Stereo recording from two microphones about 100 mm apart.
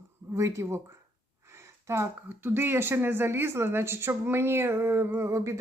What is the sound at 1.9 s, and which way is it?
Speech, 25° right (ahead or behind).